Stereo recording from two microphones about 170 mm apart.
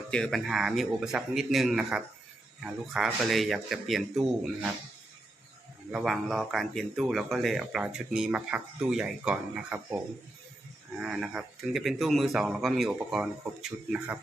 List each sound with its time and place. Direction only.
0.1 s speech: 5° left (ahead or behind)
5.9 s speech: centre (ahead or behind)
11.0 s speech: 5° right (ahead or behind)